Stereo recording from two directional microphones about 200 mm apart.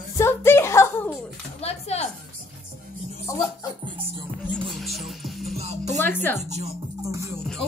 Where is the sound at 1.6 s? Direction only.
30° left (ahead or behind).